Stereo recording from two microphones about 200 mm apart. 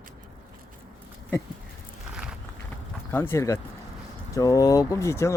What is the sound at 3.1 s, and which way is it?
Speech, 10° left (ahead or behind).